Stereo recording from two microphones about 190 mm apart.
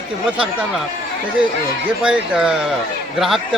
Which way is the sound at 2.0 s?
5° right (ahead or behind).